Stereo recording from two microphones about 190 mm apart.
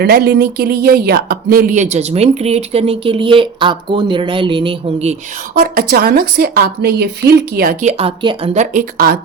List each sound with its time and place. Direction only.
0.0 s speech: 55° right (ahead or behind); by 5.1 s 30° right (ahead or behind)
5.5 s a woman's voice: 50° right (ahead or behind); by 8.4 s 30° right (ahead or behind)
8.5 s a woman's voice: 45° right (ahead or behind)